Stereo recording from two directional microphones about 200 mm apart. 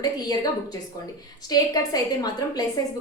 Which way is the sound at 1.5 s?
20° left (ahead or behind).